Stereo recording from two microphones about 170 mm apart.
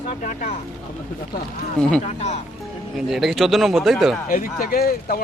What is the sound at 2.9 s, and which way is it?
A man's voice, centre (ahead or behind).